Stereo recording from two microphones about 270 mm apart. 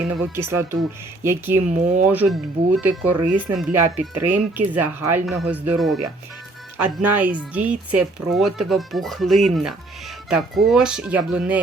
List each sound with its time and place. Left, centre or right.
0.0 s speech: centre
1.7 s speech: right
2.0 s speech: centre